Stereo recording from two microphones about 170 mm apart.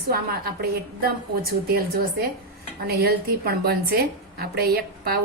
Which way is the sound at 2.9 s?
65° right (ahead or behind).